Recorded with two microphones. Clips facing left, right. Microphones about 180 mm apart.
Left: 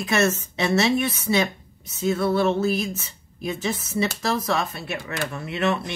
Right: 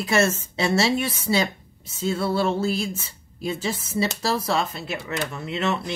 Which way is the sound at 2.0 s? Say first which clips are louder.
Left 2 dB; 30° right (ahead or behind).